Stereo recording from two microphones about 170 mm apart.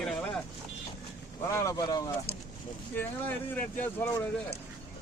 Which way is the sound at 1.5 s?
20° left (ahead or behind).